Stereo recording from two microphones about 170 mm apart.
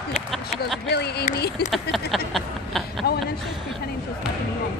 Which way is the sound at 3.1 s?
65° left (ahead or behind).